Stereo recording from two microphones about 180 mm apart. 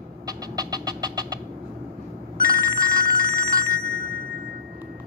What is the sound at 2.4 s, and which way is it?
Telephone bell ringing, 20° right (ahead or behind).